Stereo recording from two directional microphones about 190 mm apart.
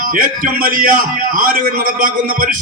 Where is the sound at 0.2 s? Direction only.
45° right (ahead or behind).